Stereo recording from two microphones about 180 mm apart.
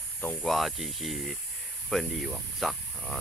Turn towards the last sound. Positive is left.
turn(degrees=0)  # may be behind; listen again after turning